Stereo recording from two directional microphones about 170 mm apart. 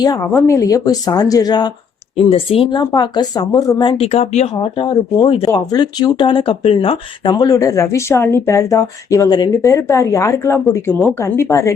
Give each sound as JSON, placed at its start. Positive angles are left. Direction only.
{"t": 0.0, "sound": "speech", "side_deg": 20}
{"t": 2.3, "sound": "speech", "side_deg": 35}
{"t": 2.9, "sound": "speech", "side_deg": 25}